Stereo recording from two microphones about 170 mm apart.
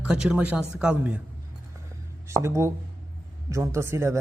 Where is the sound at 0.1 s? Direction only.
5° right (ahead or behind).